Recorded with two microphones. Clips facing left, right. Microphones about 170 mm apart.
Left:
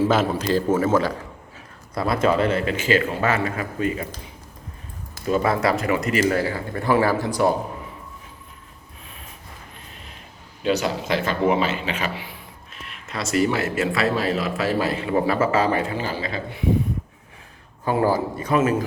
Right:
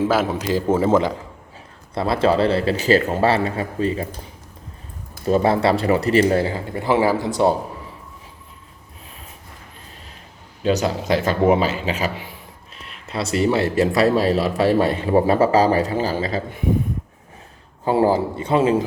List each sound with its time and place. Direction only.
0.1 s a man's voice: 10° right (ahead or behind)
0.7 s speech: 25° right (ahead or behind)
5.2 s speech: 35° right (ahead or behind)
10.6 s speech: 40° right (ahead or behind)
17.8 s speech: 25° right (ahead or behind)